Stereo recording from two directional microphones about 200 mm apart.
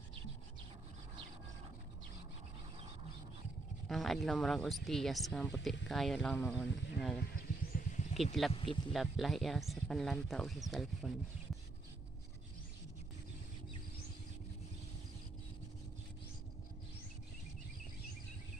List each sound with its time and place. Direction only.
3.9 s speech: centre (ahead or behind)
7.3 s a sound: 40° left (ahead or behind)
8.2 s speech: centre (ahead or behind)